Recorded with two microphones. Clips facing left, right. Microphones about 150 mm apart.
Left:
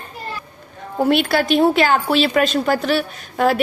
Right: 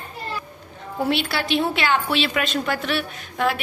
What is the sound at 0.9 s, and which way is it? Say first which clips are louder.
A woman's voice: left 7 dB; 50° left (ahead or behind).